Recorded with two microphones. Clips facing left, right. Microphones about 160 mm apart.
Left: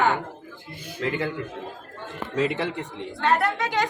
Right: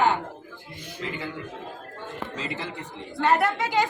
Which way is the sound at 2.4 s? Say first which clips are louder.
Left 13 dB; 65° left (ahead or behind).